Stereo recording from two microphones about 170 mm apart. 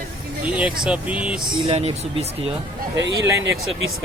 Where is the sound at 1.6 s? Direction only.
35° right (ahead or behind).